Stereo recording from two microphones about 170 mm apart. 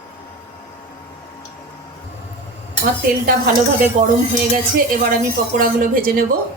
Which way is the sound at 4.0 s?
45° right (ahead or behind).